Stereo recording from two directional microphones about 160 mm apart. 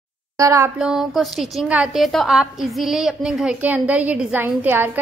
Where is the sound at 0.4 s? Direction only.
20° right (ahead or behind).